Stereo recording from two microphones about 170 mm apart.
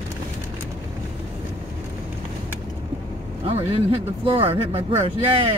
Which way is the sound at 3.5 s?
35° right (ahead or behind).